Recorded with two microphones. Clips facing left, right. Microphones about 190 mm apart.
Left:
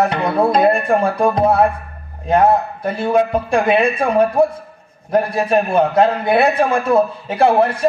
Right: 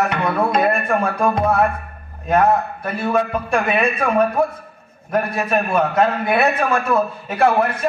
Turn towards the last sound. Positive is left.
turn(degrees=30)  # may be behind; listen again after turning